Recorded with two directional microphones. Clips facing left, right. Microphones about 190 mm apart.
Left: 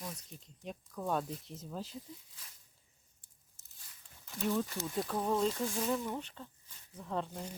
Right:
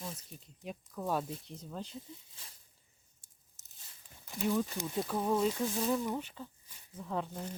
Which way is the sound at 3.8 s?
25° right (ahead or behind).